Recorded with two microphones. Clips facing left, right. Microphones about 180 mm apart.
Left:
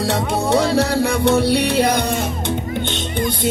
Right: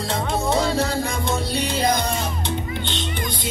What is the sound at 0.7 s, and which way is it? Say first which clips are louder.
Music: left 6 dB; 70° left (ahead or behind).